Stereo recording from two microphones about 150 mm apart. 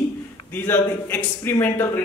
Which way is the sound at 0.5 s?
15° left (ahead or behind).